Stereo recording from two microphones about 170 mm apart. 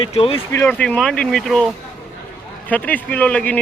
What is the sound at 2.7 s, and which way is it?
Speech, 10° left (ahead or behind).